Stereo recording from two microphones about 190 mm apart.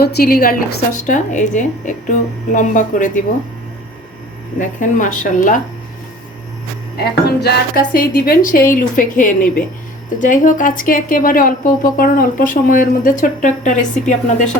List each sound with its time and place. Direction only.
0.0 s a woman's voice: 55° left (ahead or behind)
1.0 s a woman's voice: 40° left (ahead or behind)
4.8 s a woman's voice: 45° left (ahead or behind)
6.9 s a woman's voice: 55° left (ahead or behind); by 14.4 s 40° left (ahead or behind)